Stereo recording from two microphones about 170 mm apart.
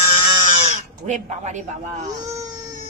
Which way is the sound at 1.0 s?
45° right (ahead or behind).